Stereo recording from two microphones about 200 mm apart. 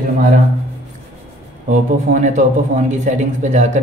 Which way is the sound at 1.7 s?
40° right (ahead or behind).